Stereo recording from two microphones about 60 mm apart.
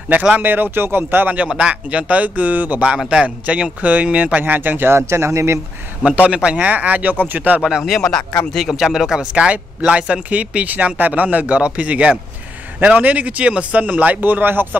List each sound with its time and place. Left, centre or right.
0.4 s speech: right
1.5 s speech: centre; by 5.6 s right
6.0 s speech: right
7.6 s a man's voice: centre
9.3 s speech: centre; by 14.8 s right